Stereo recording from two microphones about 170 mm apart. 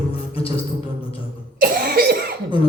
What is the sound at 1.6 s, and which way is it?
Cough, 60° right (ahead or behind).